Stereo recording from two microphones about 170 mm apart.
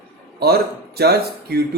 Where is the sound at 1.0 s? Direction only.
70° right (ahead or behind).